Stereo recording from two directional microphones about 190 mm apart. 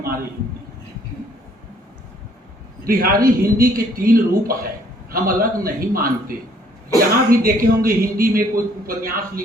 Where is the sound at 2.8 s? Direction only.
50° right (ahead or behind).